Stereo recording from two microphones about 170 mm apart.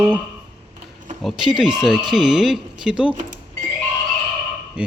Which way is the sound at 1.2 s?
5° right (ahead or behind).